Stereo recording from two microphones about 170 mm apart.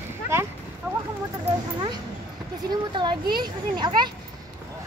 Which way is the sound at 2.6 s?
25° right (ahead or behind).